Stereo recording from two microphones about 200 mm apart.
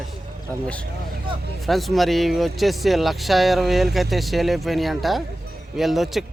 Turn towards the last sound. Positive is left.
turn(degrees=0)  # may be behind; listen again after turning